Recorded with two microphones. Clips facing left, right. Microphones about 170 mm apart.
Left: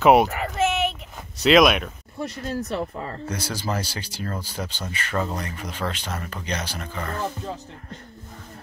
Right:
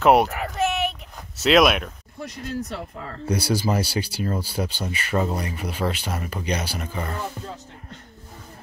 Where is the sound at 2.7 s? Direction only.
55° left (ahead or behind).